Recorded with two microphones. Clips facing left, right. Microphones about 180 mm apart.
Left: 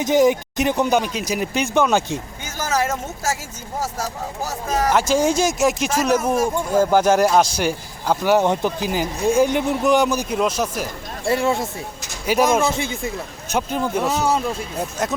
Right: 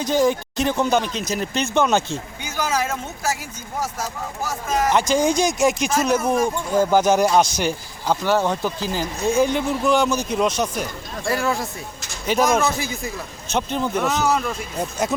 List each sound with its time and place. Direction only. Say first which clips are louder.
0.0 s speech: left 3 dB; 20° left (ahead or behind)
3.8 s speech: left 1 dB; 35° left (ahead or behind)
4.9 s speech: left 1 dB; 5° left (ahead or behind)
11.3 s speech: left 3 dB; 25° left (ahead or behind)
12.2 s speech: left 2 dB; 5° left (ahead or behind)
12.7 s speech: left 2 dB; 25° left (ahead or behind)
13.5 s speech: left 1 dB; 5° left (ahead or behind)
14.0 s speech: even; 30° left (ahead or behind)
14.8 s speech: right 3 dB; centre (ahead or behind)